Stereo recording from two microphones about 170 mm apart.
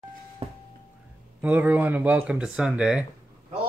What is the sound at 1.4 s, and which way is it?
Speech, 10° right (ahead or behind).